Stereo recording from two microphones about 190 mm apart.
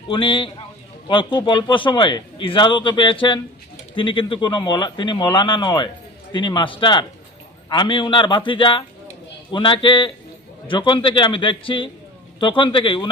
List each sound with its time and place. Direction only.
0.1 s a man's voice: 25° left (ahead or behind)